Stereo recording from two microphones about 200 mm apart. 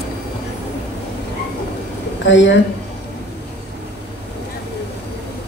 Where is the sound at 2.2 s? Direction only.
65° left (ahead or behind).